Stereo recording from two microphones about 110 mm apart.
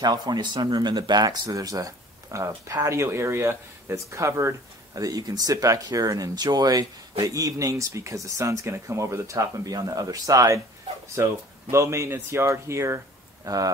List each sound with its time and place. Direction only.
0.0 s speech: 40° right (ahead or behind)